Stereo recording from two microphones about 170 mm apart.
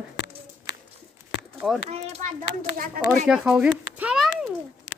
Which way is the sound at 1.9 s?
40° right (ahead or behind).